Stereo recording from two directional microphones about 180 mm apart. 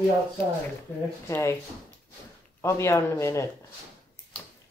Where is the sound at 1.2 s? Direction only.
15° left (ahead or behind).